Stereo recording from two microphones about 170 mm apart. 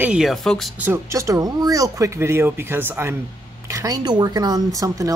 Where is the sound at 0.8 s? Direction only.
15° right (ahead or behind).